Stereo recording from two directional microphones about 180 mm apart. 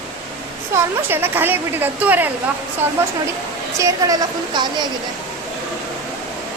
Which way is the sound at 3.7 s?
20° right (ahead or behind).